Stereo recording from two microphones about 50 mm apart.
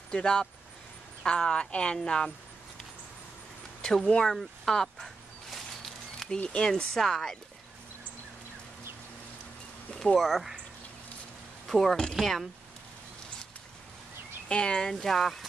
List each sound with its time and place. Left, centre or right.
0.1 s speech: centre
3.8 s speech: centre
4.3 s a sound: centre
6.5 s speech: centre
10.1 s speech: centre
11.6 s speech: centre
14.5 s speech: centre